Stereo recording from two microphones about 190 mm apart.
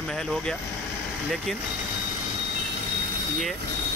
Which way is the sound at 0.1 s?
5° left (ahead or behind).